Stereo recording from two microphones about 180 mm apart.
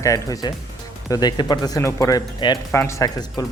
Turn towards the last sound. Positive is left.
turn(degrees=20)  # may be behind; listen again after turning